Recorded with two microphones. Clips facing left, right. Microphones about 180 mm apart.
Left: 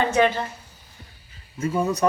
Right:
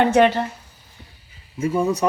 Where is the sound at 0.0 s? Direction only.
70° right (ahead or behind).